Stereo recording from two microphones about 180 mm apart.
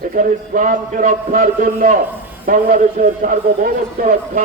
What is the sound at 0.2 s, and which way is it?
Music, 50° right (ahead or behind).